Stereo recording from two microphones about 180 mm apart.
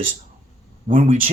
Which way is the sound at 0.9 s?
50° right (ahead or behind).